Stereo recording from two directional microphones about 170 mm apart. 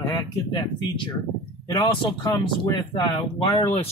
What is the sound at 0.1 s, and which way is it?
Speech, 25° left (ahead or behind).